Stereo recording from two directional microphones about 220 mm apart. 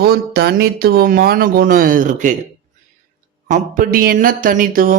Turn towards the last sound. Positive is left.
turn(degrees=-40)  # may be behind; listen again after turning